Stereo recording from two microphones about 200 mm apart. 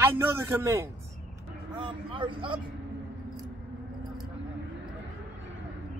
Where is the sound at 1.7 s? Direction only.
25° right (ahead or behind).